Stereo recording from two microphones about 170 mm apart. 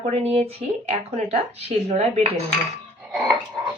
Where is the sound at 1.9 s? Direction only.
40° right (ahead or behind).